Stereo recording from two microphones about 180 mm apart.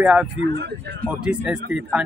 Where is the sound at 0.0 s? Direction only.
5° right (ahead or behind).